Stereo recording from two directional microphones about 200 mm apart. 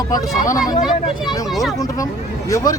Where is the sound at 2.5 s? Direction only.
15° left (ahead or behind).